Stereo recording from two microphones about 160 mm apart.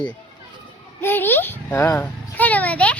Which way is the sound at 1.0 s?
15° left (ahead or behind).